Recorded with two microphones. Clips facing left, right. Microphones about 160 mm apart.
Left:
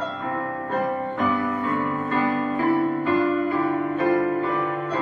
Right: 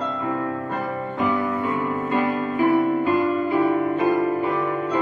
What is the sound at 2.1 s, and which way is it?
Music, 15° right (ahead or behind).